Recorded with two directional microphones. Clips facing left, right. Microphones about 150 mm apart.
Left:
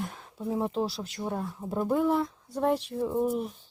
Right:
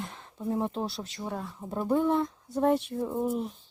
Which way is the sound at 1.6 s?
Centre (ahead or behind).